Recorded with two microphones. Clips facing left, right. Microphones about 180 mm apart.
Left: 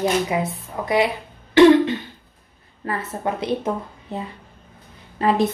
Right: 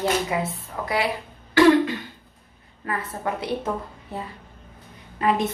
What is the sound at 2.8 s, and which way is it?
A woman's voice, 25° left (ahead or behind).